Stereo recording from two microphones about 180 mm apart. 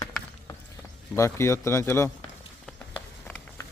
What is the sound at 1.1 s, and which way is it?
Speech, 15° left (ahead or behind).